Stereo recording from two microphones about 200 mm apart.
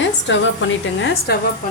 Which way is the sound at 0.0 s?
65° left (ahead or behind).